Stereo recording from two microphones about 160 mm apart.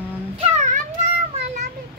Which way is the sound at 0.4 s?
45° right (ahead or behind).